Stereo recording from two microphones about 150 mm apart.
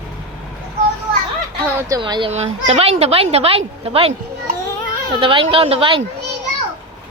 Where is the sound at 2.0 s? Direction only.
35° right (ahead or behind).